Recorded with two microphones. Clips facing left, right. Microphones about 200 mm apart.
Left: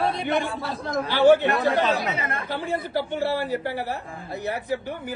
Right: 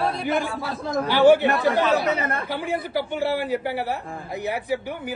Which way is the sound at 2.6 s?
15° right (ahead or behind).